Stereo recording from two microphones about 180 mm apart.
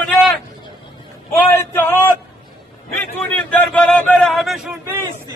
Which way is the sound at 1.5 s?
15° left (ahead or behind).